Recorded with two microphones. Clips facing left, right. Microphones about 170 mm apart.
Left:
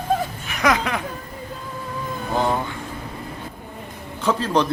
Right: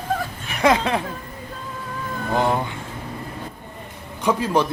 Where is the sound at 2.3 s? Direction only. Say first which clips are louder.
Right 1 dB; 15° right (ahead or behind).